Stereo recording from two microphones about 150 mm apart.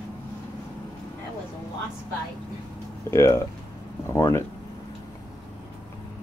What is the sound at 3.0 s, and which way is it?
Speech, 20° left (ahead or behind).